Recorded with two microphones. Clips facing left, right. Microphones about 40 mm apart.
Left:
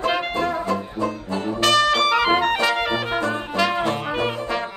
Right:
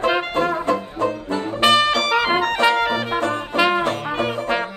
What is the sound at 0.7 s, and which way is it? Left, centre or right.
Music, right.